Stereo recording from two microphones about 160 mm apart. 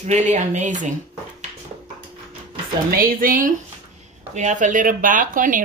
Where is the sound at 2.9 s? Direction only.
65° right (ahead or behind).